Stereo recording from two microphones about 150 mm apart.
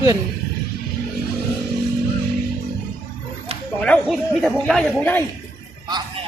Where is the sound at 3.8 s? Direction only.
5° left (ahead or behind).